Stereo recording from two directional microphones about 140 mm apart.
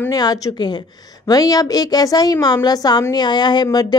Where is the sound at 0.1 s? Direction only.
25° left (ahead or behind).